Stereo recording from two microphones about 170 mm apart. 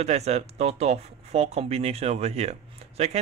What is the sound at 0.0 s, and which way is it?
Speech, 40° right (ahead or behind).